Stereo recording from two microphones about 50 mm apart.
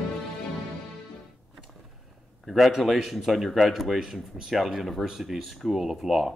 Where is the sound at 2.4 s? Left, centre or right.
Centre.